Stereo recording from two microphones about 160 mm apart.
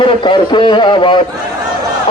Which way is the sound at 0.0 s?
30° left (ahead or behind).